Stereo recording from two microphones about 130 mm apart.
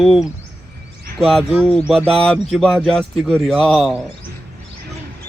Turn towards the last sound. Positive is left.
turn(degrees=0)  # may be behind; listen again after turning